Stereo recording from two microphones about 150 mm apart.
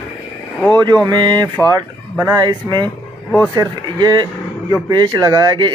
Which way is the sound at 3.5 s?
25° right (ahead or behind).